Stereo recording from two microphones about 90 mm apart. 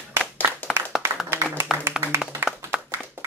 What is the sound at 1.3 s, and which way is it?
Clapping, 25° right (ahead or behind).